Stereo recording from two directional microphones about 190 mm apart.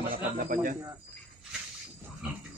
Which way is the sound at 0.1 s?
45° right (ahead or behind).